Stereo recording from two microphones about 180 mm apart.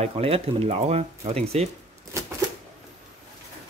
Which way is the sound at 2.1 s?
15° right (ahead or behind).